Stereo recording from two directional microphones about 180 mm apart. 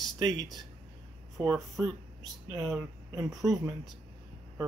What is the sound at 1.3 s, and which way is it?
Speech, centre (ahead or behind).